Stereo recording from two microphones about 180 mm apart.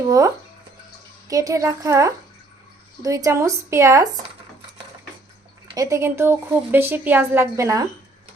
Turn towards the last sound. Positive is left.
turn(degrees=-15)  # may be behind; listen again after turning